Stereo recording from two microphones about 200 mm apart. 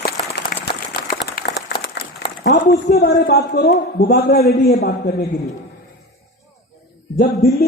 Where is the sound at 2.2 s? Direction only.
55° left (ahead or behind).